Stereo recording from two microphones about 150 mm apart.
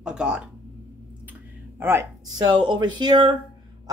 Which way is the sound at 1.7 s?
15° right (ahead or behind).